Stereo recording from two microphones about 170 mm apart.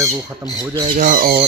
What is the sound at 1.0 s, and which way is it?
Speech, 55° right (ahead or behind).